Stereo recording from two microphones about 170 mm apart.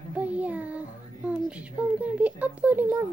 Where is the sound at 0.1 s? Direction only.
10° right (ahead or behind).